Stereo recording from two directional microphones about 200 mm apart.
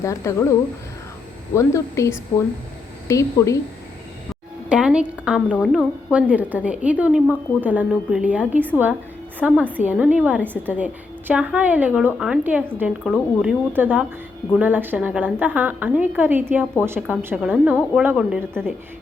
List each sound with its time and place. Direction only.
0.0 s a woman's voice: 15° left (ahead or behind)
1.5 s a woman's voice: 15° left (ahead or behind)
4.7 s a woman's voice: 5° right (ahead or behind)